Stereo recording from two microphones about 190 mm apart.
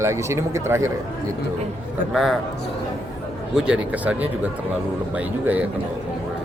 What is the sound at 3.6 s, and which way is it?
Speech, 5° right (ahead or behind).